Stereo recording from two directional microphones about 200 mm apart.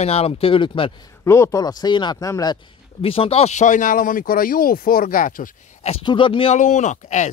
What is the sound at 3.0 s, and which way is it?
Speech, 30° left (ahead or behind).